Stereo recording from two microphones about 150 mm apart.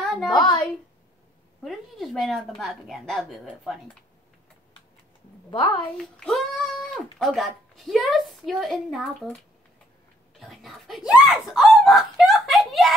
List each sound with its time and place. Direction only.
0.0 s a sound: centre (ahead or behind)
0.4 s a woman's voice: 30° left (ahead or behind)
1.6 s a woman's voice: centre (ahead or behind)
5.5 s a woman's voice: 35° left (ahead or behind)
5.9 s a child's voice: 5° left (ahead or behind)
10.4 s speech: centre (ahead or behind)